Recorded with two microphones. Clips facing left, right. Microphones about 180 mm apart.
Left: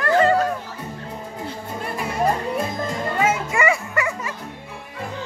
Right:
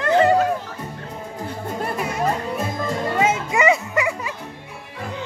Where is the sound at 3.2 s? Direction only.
20° right (ahead or behind).